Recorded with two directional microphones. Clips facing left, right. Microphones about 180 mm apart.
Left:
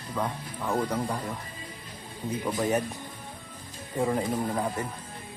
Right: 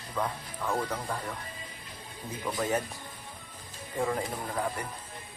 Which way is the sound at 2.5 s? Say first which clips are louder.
Left 3 dB; 20° left (ahead or behind).